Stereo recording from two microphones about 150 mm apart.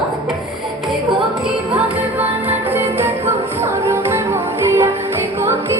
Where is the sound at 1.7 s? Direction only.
10° right (ahead or behind).